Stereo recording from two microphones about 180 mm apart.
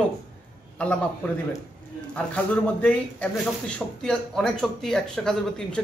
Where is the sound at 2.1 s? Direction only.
5° left (ahead or behind).